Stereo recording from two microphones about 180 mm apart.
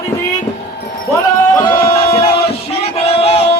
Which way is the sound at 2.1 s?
30° left (ahead or behind).